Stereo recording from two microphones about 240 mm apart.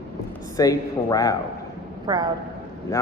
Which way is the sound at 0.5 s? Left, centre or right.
Centre.